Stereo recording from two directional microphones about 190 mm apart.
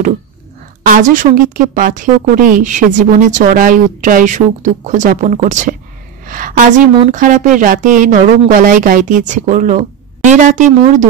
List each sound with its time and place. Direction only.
0.8 s a woman's voice: 45° right (ahead or behind)
6.2 s a sound: 45° right (ahead or behind)
7.1 s speech: 40° right (ahead or behind)